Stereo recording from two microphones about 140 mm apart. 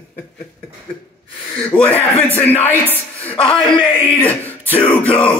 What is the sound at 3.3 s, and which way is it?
Speech, 40° left (ahead or behind).